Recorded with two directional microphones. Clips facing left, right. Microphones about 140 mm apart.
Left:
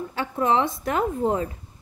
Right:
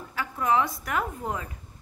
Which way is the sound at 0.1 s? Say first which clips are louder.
Left 2 dB; 25° left (ahead or behind).